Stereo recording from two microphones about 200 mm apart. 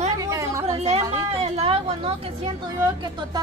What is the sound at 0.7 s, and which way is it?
A woman's voice, 30° right (ahead or behind).